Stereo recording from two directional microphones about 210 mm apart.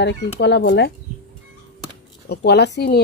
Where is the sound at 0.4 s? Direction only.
55° left (ahead or behind).